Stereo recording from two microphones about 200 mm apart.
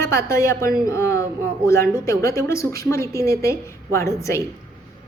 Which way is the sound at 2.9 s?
15° left (ahead or behind).